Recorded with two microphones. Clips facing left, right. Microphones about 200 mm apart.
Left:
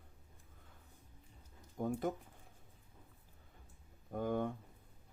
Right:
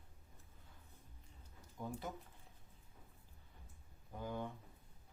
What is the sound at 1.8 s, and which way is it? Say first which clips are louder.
Speech: left 9 dB; 50° left (ahead or behind).